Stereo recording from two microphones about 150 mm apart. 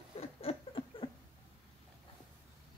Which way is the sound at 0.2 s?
40° left (ahead or behind).